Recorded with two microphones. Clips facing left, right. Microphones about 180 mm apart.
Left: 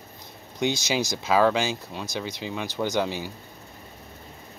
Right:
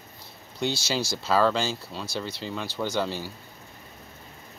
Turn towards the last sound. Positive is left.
turn(degrees=15)  # may be behind; listen again after turning